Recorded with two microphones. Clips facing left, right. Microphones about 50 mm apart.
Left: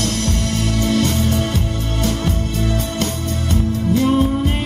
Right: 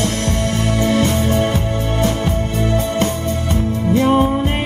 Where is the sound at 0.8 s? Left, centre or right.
Right.